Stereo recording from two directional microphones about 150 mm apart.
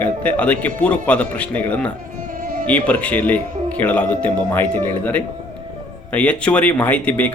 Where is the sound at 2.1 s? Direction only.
65° right (ahead or behind).